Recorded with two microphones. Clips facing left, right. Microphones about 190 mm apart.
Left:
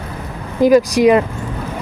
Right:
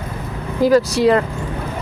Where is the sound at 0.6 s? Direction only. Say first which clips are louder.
Left 3 dB; 15° left (ahead or behind).